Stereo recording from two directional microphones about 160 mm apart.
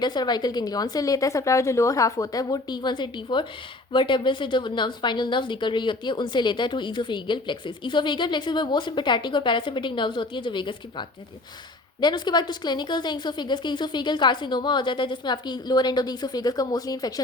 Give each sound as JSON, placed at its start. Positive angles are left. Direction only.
{"t": 0.0, "sound": "a woman's voice", "side_deg": 25}